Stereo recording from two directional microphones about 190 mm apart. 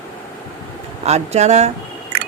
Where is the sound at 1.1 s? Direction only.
35° right (ahead or behind).